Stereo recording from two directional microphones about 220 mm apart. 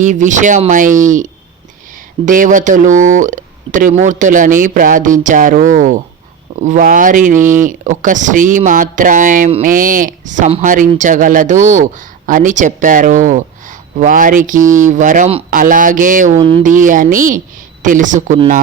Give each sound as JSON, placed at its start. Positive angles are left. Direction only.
{"t": 0.0, "sound": "speech", "side_deg": -35}
{"t": 16.4, "sound": "speech", "side_deg": -25}
{"t": 16.6, "sound": "speech", "side_deg": -35}